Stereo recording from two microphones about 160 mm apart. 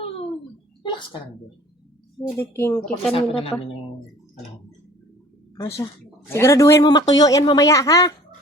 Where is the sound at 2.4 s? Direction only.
15° left (ahead or behind).